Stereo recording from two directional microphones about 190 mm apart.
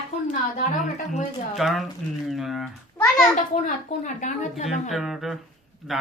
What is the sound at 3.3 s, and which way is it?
A woman's voice, 40° left (ahead or behind).